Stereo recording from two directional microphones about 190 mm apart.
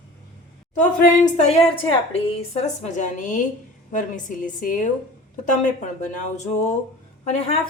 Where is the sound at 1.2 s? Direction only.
35° left (ahead or behind).